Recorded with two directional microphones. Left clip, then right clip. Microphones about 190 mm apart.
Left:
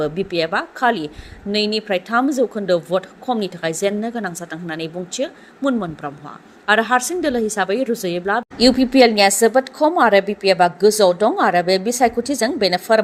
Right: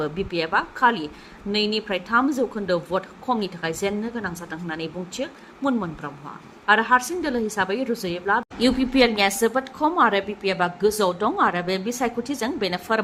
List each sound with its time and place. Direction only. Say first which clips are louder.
0.0 s a woman's voice: left 6 dB; 20° left (ahead or behind)